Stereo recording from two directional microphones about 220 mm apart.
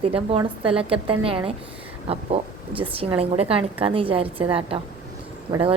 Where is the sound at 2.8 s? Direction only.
25° right (ahead or behind).